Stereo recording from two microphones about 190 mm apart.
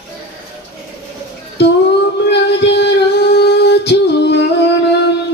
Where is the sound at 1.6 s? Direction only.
60° left (ahead or behind).